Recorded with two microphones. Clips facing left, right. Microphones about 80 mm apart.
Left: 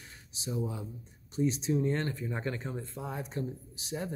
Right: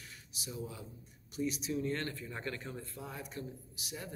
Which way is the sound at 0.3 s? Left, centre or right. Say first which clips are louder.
Left 8 dB; left.